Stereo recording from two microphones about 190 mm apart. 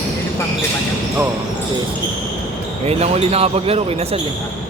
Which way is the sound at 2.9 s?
35° right (ahead or behind).